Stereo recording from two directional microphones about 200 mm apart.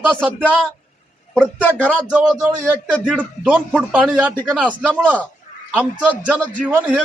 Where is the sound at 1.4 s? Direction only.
10° left (ahead or behind).